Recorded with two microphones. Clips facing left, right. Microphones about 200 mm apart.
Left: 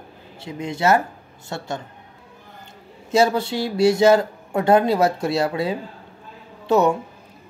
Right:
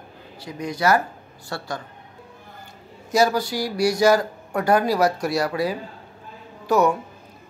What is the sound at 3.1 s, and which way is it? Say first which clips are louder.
Speech: left 2 dB; 25° left (ahead or behind).